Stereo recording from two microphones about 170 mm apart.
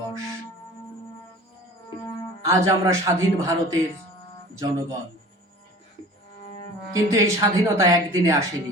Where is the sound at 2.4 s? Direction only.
15° right (ahead or behind).